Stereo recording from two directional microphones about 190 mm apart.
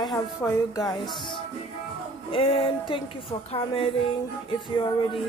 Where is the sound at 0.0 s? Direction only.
20° left (ahead or behind).